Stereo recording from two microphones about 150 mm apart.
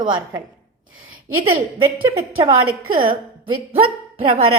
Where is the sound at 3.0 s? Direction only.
35° right (ahead or behind).